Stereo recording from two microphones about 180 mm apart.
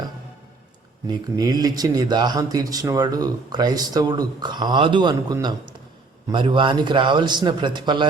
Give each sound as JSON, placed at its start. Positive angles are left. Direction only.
{"t": 1.0, "sound": "speech", "side_deg": -20}